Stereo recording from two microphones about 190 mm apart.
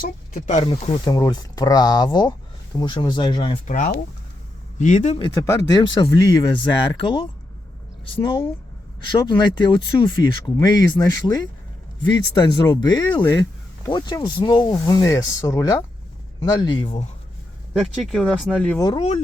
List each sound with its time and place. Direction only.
0.3 s speech: 35° left (ahead or behind)
3.7 s a man's voice: 40° left (ahead or behind)
5.2 s speech: 20° left (ahead or behind)
17.7 s speech: centre (ahead or behind)
18.8 s speech: 20° left (ahead or behind)